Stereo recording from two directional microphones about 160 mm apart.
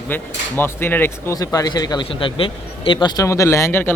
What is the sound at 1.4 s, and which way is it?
A man's voice, 25° left (ahead or behind).